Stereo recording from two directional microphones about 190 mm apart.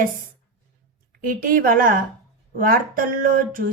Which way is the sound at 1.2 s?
45° right (ahead or behind).